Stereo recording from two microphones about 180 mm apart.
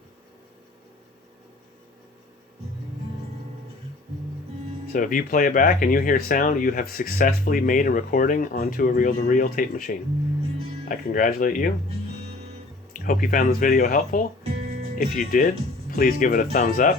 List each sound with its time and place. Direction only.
4.9 s speech: 50° left (ahead or behind)
12.9 s speech: 50° left (ahead or behind)